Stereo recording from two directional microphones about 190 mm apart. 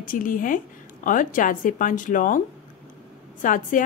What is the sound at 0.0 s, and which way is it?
A woman's voice, 45° left (ahead or behind).